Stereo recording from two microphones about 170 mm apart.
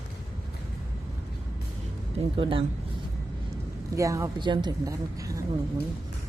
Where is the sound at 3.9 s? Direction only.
20° right (ahead or behind).